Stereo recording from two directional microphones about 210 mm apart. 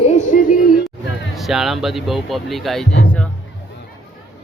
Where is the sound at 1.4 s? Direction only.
Centre (ahead or behind).